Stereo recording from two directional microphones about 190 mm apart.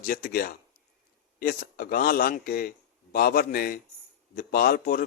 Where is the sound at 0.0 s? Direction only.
50° left (ahead or behind).